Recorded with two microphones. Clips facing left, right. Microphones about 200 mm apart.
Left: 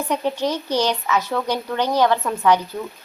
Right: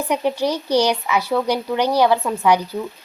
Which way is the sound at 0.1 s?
10° right (ahead or behind).